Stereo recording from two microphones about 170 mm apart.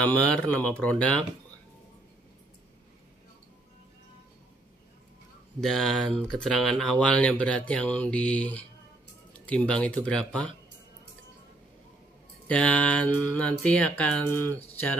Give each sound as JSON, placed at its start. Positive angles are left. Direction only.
{"t": 0.0, "sound": "speech", "side_deg": 5}
{"t": 5.6, "sound": "speech", "side_deg": 5}
{"t": 12.4, "sound": "speech", "side_deg": 10}